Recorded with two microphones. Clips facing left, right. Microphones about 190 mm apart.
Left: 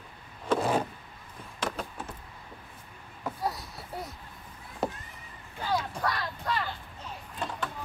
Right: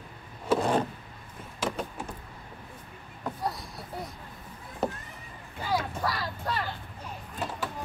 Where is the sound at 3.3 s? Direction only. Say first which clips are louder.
Right 1 dB; 5° left (ahead or behind).